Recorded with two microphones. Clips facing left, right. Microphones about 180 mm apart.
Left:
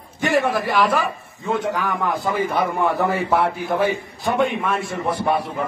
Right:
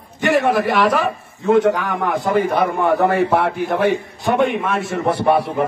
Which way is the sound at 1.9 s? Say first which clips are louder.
Right 4 dB; 65° right (ahead or behind).